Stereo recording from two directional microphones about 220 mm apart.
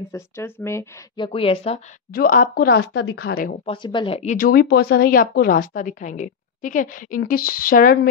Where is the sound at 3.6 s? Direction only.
20° left (ahead or behind).